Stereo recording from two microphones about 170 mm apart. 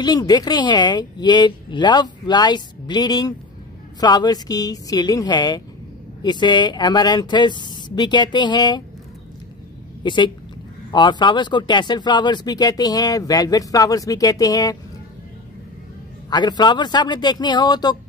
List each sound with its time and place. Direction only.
0.0 s speech: 25° left (ahead or behind)
10.0 s speech: 25° left (ahead or behind)
16.3 s speech: 25° left (ahead or behind)